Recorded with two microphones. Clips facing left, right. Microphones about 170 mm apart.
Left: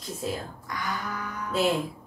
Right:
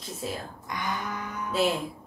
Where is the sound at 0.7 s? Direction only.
20° right (ahead or behind).